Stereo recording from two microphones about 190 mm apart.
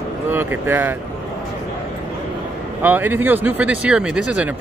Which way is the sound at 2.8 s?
10° right (ahead or behind).